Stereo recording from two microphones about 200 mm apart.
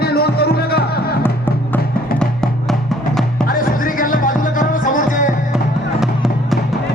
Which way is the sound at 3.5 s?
45° left (ahead or behind).